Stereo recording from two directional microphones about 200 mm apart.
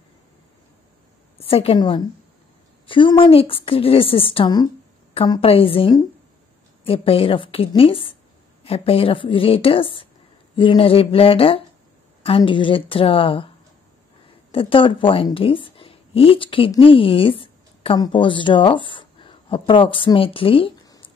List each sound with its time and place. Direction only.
1.4 s a woman's voice: 30° left (ahead or behind)
14.5 s speech: 25° left (ahead or behind)